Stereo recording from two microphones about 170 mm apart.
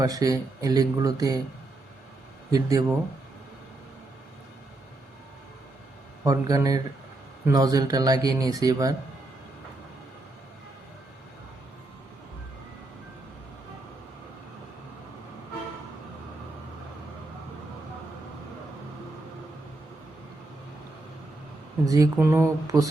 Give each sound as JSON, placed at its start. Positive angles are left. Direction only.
{"t": 0.0, "sound": "speech", "side_deg": -20}
{"t": 2.5, "sound": "speech", "side_deg": -20}
{"t": 6.2, "sound": "speech", "side_deg": -20}
{"t": 21.8, "sound": "speech", "side_deg": -20}